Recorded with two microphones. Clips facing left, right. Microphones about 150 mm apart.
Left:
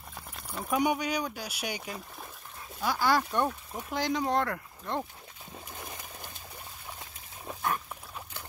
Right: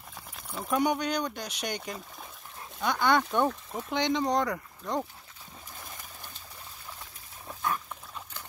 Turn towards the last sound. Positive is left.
turn(degrees=5)  # may be behind; listen again after turning